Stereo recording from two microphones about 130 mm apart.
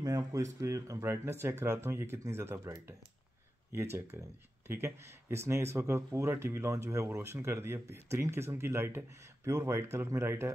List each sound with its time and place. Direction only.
0.0 s speech: 25° right (ahead or behind)
4.2 s speech: 20° right (ahead or behind)